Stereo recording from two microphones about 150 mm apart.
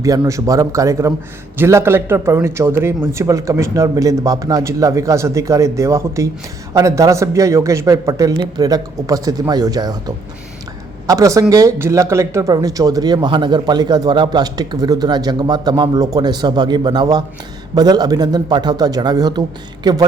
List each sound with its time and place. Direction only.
0.0 s speech: 25° right (ahead or behind)
11.0 s speech: 20° right (ahead or behind)